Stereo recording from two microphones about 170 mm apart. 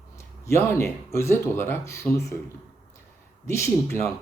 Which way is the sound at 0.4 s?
15° left (ahead or behind).